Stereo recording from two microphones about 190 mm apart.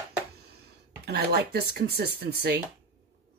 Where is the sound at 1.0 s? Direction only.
60° right (ahead or behind).